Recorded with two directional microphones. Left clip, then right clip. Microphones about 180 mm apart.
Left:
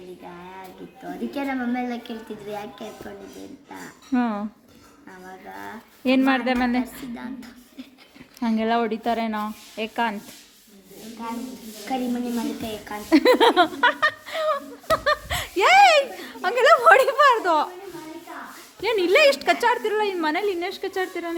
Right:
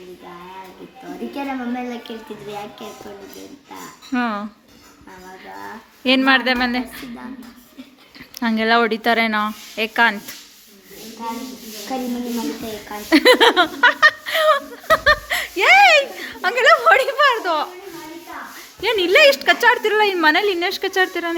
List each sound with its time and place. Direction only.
1.4 s speech: 20° left (ahead or behind)
4.1 s speech: 15° left (ahead or behind)
5.5 s speech: 10° left (ahead or behind)
8.4 s speech: centre (ahead or behind)
12.9 s speech: 10° left (ahead or behind); by 17.7 s 25° left (ahead or behind)
18.8 s speech: 5° left (ahead or behind)
19.8 s speech: 10° right (ahead or behind)